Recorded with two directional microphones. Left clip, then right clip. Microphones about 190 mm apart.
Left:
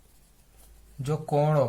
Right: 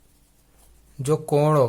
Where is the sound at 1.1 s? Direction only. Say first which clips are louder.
Right 6 dB; 45° right (ahead or behind).